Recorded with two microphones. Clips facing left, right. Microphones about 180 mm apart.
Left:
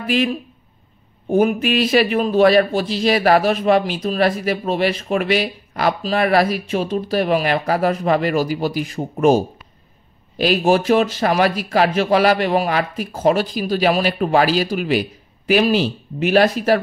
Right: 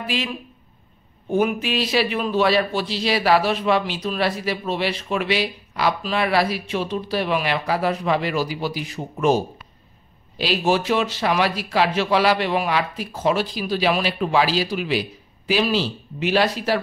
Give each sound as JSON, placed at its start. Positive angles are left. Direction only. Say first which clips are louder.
{"t": 0.0, "sound": "speech", "louder": "left 7 dB", "side_deg": 50}
{"t": 1.3, "sound": "a man's voice", "louder": "left 5 dB", "side_deg": 50}